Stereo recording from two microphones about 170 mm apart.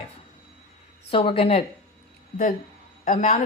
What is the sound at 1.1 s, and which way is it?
Speech, 35° left (ahead or behind).